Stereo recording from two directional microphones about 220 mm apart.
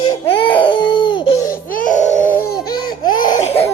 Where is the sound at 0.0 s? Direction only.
20° left (ahead or behind).